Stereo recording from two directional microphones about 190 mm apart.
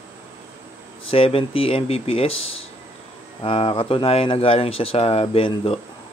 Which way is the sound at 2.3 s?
90° left.